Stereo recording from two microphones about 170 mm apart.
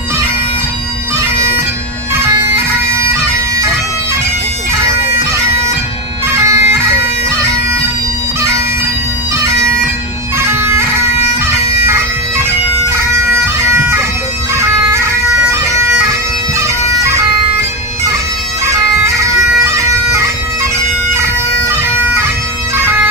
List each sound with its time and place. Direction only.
2.1 s bagpipes: 15° right (ahead or behind)
6.3 s bagpipes: 15° right (ahead or behind)
10.4 s bagpipes: 15° right (ahead or behind)
16.0 s bagpipes: 15° right (ahead or behind)
19.6 s bagpipes: 15° right (ahead or behind)
21.6 s bagpipes: 10° right (ahead or behind)